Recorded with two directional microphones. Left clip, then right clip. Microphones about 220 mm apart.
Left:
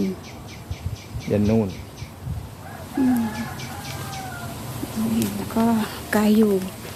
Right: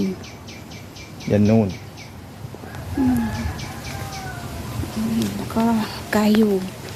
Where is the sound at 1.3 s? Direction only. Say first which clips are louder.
Right 3 dB; 50° right (ahead or behind).